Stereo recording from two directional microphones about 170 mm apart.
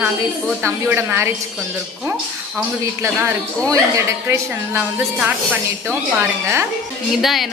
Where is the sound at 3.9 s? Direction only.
15° right (ahead or behind).